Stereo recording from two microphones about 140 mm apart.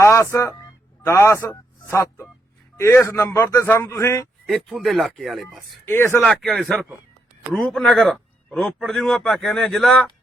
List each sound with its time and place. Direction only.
0.0 s speech: 20° left (ahead or behind)
4.4 s a man's voice: centre (ahead or behind)
5.8 s speech: 15° left (ahead or behind)
6.2 s a man's voice: 5° left (ahead or behind)